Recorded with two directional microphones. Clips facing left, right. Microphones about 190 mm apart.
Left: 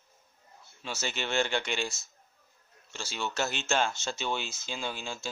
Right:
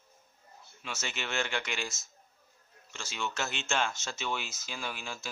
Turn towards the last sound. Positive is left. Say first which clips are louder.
# left 3 dB
turn(degrees=30)  # may be behind; listen again after turning